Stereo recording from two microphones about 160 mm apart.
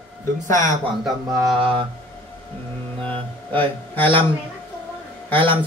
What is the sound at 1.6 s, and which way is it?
Speech, 35° right (ahead or behind).